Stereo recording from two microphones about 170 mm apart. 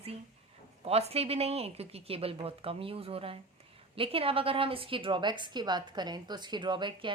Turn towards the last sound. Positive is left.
turn(degrees=-30)  # may be behind; listen again after turning